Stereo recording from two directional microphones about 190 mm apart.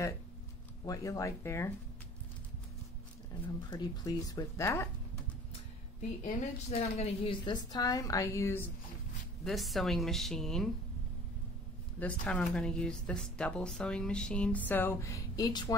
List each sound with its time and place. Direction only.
0.8 s speech: 15° left (ahead or behind)
3.7 s speech: 20° left (ahead or behind)
5.9 s a woman's voice: 35° left (ahead or behind); by 8.6 s 15° left (ahead or behind)
9.4 s a woman's voice: centre (ahead or behind)
12.0 s a woman's voice: 5° left (ahead or behind)